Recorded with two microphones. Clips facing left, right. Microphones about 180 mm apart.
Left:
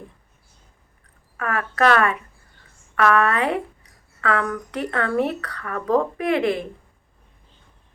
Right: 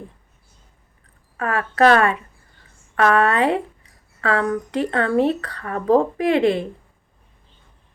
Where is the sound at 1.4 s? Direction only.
30° right (ahead or behind).